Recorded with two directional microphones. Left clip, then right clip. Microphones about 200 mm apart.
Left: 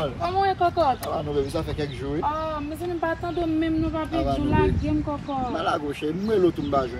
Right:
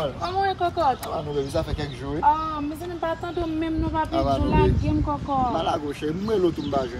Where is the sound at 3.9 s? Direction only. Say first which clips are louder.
Right 3 dB; 15° right (ahead or behind).